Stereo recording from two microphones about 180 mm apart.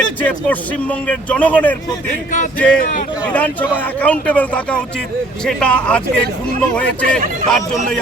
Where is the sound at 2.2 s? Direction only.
45° left (ahead or behind).